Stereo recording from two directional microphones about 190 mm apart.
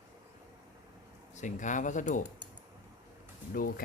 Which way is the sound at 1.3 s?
40° left (ahead or behind).